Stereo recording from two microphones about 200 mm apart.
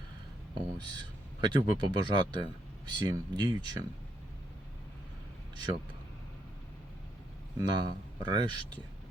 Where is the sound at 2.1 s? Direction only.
20° right (ahead or behind).